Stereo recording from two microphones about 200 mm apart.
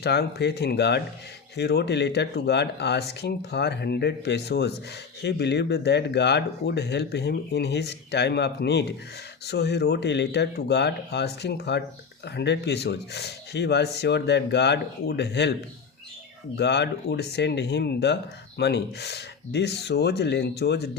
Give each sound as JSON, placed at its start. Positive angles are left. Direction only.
{"t": 0.0, "sound": "speech", "side_deg": 55}
{"t": 16.6, "sound": "speech", "side_deg": 55}